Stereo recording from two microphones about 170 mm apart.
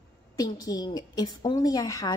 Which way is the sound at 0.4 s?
20° left (ahead or behind).